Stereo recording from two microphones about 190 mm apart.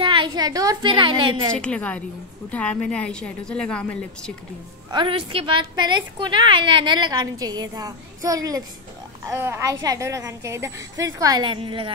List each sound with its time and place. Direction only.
0.0 s a woman's voice: 25° right (ahead or behind)
1.5 s a woman's voice: 5° left (ahead or behind)
4.9 s a woman's voice: 30° right (ahead or behind)